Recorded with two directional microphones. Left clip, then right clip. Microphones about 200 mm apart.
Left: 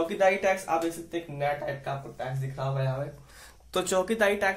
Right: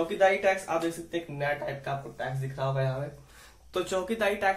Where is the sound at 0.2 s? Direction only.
40° left (ahead or behind).